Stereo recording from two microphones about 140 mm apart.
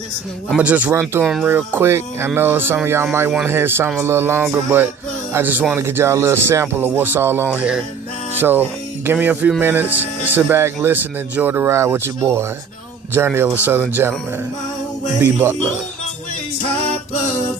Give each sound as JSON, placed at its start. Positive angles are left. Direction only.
{"t": 0.6, "sound": "speech", "side_deg": -10}